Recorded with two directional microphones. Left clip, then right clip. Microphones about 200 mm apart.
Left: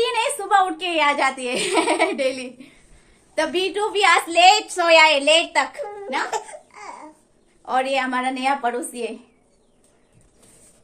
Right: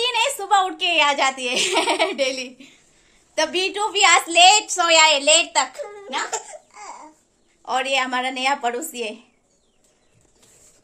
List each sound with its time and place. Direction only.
0.0 s a child's voice: 25° right (ahead or behind)
7.6 s a woman's voice: 30° right (ahead or behind)